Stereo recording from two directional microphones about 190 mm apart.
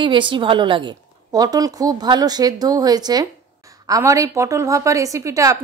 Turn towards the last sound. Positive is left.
turn(degrees=-15)  # may be behind; listen again after turning